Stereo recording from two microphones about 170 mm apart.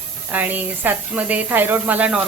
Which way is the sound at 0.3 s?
10° right (ahead or behind).